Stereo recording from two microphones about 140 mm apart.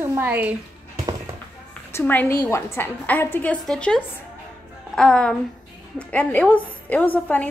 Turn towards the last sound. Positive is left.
turn(degrees=10)  # may be behind; listen again after turning